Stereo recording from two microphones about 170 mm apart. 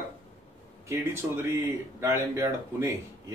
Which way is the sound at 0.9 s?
15° right (ahead or behind).